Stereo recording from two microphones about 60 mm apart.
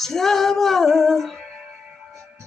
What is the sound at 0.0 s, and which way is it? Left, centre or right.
Music, centre.